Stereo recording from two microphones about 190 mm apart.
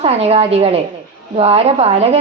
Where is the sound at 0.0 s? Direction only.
35° right (ahead or behind).